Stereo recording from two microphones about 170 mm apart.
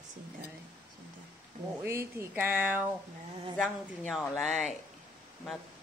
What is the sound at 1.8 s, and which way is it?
Speech, 15° right (ahead or behind).